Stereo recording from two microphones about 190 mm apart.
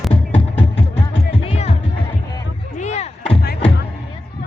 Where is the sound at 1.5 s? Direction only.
35° left (ahead or behind).